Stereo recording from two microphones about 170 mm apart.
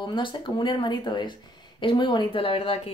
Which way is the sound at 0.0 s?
30° left (ahead or behind).